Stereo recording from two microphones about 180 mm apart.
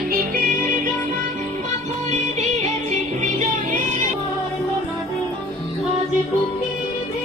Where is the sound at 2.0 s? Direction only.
40° right (ahead or behind).